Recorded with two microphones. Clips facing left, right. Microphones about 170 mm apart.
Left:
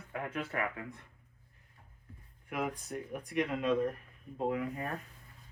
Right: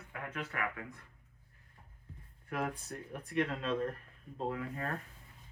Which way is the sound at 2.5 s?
15° left (ahead or behind).